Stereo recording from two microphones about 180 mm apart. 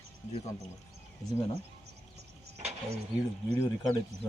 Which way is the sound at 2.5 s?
35° right (ahead or behind).